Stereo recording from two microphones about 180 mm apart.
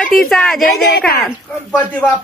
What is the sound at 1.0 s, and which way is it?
Speech, 60° left (ahead or behind).